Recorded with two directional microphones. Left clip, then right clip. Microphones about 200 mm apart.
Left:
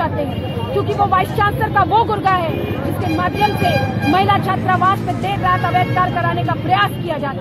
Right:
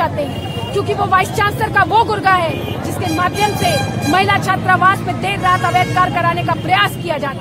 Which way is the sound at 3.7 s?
20° right (ahead or behind).